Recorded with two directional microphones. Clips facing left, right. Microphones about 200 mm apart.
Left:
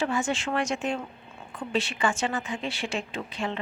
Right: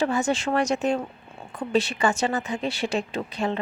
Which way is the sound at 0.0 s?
40° right (ahead or behind).